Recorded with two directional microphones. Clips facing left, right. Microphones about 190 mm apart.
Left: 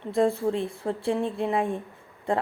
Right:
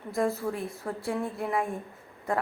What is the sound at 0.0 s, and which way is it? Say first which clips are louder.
Speech: left 5 dB; 30° left (ahead or behind).